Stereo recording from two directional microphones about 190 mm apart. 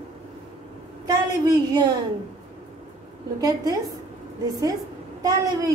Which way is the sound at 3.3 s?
20° right (ahead or behind).